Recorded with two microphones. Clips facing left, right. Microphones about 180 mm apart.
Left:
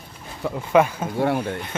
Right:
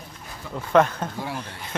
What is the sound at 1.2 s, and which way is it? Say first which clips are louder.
Speech: left 10 dB; 60° left (ahead or behind).